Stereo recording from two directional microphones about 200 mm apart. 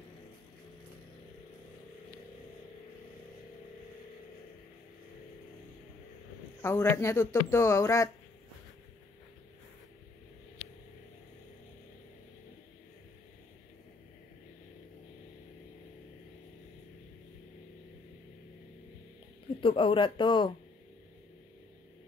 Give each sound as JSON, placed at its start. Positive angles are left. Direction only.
{"t": 6.6, "sound": "speech", "side_deg": 10}
{"t": 19.6, "sound": "speech", "side_deg": 25}